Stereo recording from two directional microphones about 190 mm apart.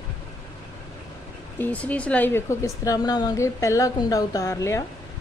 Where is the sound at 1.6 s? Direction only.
10° left (ahead or behind).